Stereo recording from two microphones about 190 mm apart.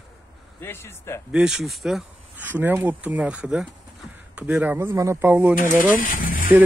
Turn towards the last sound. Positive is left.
turn(degrees=45)  # may be behind; listen again after turning